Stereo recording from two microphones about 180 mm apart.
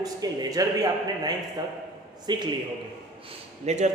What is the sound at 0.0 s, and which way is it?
Speech, 20° right (ahead or behind).